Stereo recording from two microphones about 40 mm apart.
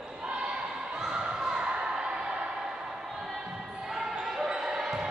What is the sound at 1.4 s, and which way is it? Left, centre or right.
Basketball bounce, centre.